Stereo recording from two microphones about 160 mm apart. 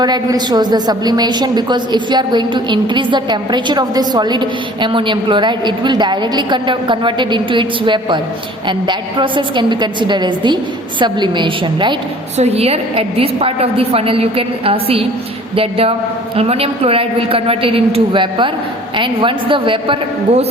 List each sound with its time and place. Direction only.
0.0 s a woman's voice: 25° right (ahead or behind)